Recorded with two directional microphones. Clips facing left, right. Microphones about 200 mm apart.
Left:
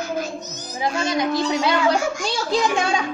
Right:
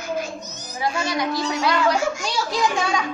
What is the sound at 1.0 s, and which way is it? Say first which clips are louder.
Speech: left 6 dB; 20° left (ahead or behind).